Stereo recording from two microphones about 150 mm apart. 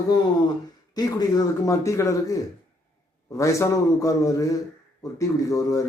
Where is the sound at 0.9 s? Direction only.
25° left (ahead or behind).